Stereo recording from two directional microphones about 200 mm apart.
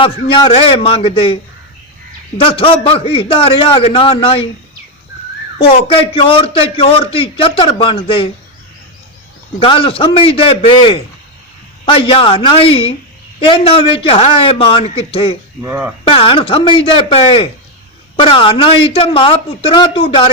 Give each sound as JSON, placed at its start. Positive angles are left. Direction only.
{"t": 0.0, "sound": "a man's voice", "side_deg": 25}
{"t": 2.4, "sound": "a man's voice", "side_deg": 25}
{"t": 5.9, "sound": "a man's voice", "side_deg": 25}
{"t": 9.6, "sound": "a man's voice", "side_deg": 25}
{"t": 15.6, "sound": "speech", "side_deg": -10}
{"t": 16.0, "sound": "a man's voice", "side_deg": 25}